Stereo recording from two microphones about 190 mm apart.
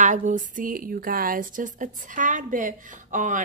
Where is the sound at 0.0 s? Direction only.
40° right (ahead or behind).